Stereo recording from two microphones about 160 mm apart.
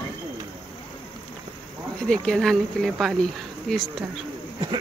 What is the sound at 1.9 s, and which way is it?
Speech, 5° left (ahead or behind).